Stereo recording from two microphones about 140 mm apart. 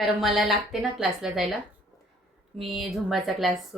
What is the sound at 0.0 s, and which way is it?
A woman's voice, centre (ahead or behind).